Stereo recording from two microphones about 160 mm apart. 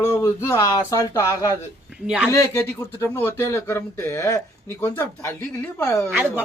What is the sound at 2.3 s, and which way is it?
Speech, 15° left (ahead or behind).